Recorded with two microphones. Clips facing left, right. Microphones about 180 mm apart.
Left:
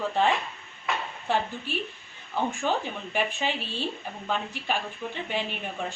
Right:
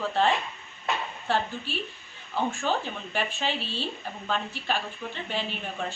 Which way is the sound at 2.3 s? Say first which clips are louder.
Even; 15° left (ahead or behind).